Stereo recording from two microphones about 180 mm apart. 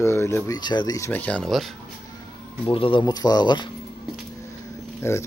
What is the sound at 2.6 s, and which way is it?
Speech, 30° left (ahead or behind).